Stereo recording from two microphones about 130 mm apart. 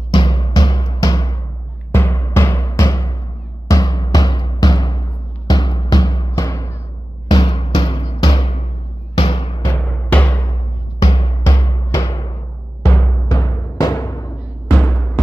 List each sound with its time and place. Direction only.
0.1 s music: 35° left (ahead or behind)
7.2 s music: 35° left (ahead or behind)
8.2 s music: 35° left (ahead or behind)
9.1 s music: 50° left (ahead or behind)
9.8 s music: 15° left (ahead or behind)
11.4 s music: 25° left (ahead or behind)
12.8 s timpani: 20° left (ahead or behind)
14.8 s music: 15° left (ahead or behind)